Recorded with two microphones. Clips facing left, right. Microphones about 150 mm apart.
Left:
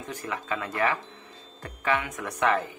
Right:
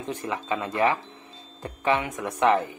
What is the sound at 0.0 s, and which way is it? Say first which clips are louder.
A man's voice: right 4 dB; 20° right (ahead or behind).